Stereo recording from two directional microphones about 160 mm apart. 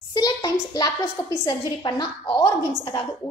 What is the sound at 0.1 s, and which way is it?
Hands, 25° left (ahead or behind).